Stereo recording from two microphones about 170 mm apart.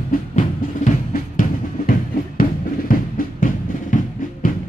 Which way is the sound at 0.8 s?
50° left (ahead or behind).